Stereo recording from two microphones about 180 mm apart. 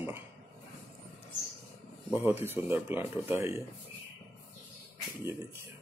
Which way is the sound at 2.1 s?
10° right (ahead or behind).